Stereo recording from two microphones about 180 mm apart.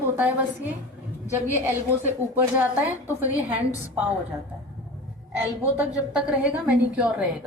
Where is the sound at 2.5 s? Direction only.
10° right (ahead or behind).